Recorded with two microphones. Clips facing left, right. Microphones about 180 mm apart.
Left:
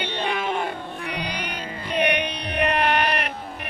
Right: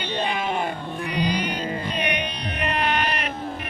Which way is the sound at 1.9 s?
60° left (ahead or behind).